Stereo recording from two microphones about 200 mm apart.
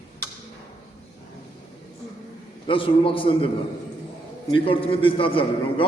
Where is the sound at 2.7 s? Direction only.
25° left (ahead or behind).